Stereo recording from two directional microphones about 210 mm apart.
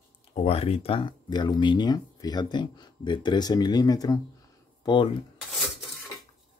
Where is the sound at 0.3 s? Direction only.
30° left (ahead or behind).